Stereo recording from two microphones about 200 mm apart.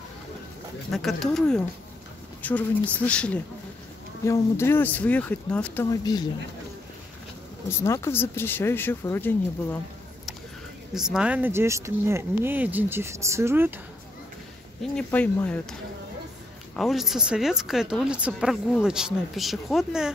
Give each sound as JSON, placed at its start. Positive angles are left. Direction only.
{"t": 0.9, "sound": "speech", "side_deg": 0}
{"t": 5.9, "sound": "speech", "side_deg": 20}
{"t": 7.7, "sound": "speech", "side_deg": 15}
{"t": 11.0, "sound": "speech", "side_deg": -5}
{"t": 14.8, "sound": "speech", "side_deg": 5}
{"t": 16.7, "sound": "speech", "side_deg": 0}